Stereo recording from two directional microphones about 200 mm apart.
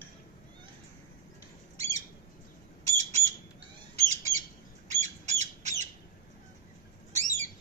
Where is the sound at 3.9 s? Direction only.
35° right (ahead or behind).